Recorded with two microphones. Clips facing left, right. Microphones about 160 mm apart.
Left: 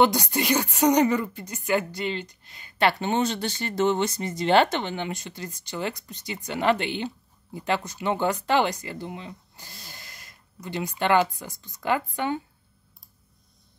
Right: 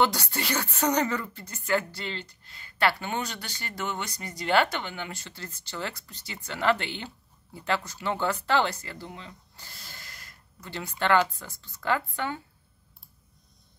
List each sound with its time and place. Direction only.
0.0 s a woman's voice: 15° left (ahead or behind)